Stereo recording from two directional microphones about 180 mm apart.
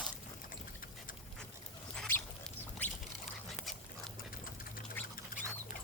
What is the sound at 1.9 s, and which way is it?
Rodents, 5° left (ahead or behind).